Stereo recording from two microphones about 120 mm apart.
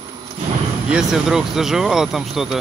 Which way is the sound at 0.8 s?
5° right (ahead or behind).